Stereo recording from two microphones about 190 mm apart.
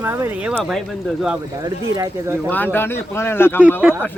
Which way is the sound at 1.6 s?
20° right (ahead or behind).